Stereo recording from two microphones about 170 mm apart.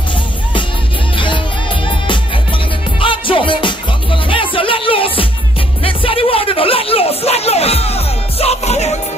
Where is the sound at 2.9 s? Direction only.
30° left (ahead or behind).